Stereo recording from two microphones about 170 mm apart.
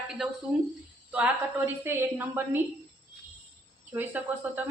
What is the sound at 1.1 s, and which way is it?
A woman's voice, 10° right (ahead or behind).